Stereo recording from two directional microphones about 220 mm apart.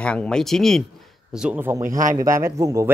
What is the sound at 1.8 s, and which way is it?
Speech, 35° right (ahead or behind).